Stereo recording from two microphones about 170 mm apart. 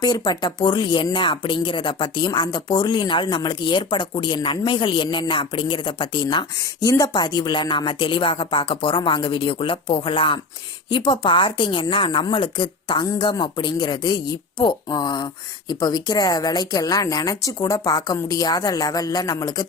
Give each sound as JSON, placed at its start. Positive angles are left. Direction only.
{"t": 0.0, "sound": "speech", "side_deg": 25}